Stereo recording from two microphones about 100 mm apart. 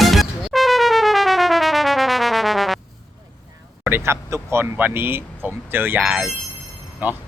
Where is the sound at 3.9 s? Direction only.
25° right (ahead or behind).